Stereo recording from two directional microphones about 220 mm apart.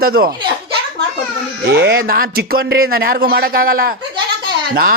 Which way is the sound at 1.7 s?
50° right (ahead or behind).